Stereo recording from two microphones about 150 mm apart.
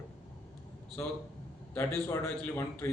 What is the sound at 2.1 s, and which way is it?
Speech, 15° left (ahead or behind).